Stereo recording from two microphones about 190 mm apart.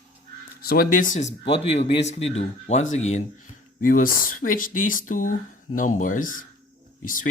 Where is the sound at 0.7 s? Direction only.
50° left (ahead or behind).